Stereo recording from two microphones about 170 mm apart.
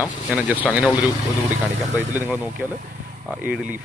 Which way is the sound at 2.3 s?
10° right (ahead or behind).